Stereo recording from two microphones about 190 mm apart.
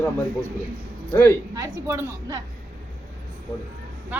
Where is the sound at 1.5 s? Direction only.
15° right (ahead or behind).